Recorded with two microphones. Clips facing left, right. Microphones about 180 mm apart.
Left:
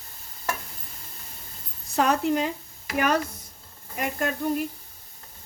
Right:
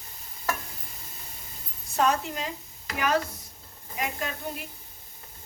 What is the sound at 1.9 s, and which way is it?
Speech, 60° left (ahead or behind).